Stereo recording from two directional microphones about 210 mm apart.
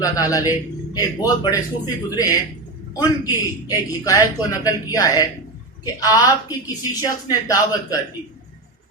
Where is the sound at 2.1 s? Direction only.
20° left (ahead or behind).